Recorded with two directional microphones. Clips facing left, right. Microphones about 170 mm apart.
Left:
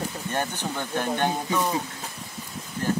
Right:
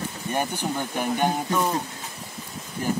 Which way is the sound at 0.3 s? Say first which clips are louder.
Right 4 dB; 10° right (ahead or behind).